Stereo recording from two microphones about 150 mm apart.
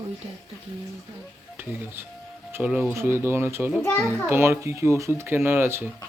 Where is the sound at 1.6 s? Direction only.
15° right (ahead or behind).